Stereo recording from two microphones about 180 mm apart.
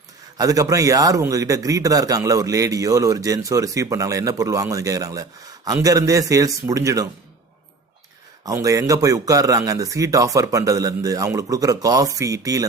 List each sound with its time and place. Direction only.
0.3 s a man's voice: 20° right (ahead or behind)
8.4 s a man's voice: 20° right (ahead or behind)